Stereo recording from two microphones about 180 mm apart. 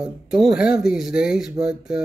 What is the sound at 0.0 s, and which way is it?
Speech, centre (ahead or behind).